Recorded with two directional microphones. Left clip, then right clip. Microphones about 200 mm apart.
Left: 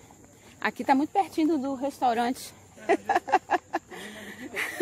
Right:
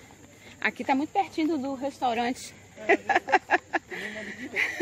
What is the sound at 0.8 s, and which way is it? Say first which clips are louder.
Speech: left 4 dB; 35° left (ahead or behind).